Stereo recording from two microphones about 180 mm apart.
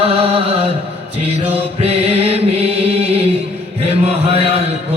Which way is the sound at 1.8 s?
35° right (ahead or behind).